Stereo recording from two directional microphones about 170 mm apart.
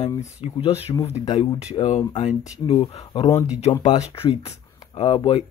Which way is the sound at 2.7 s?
25° left (ahead or behind).